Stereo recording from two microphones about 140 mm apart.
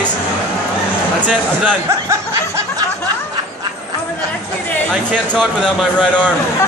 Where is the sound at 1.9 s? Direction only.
20° right (ahead or behind).